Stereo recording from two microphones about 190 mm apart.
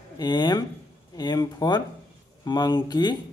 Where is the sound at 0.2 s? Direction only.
20° left (ahead or behind).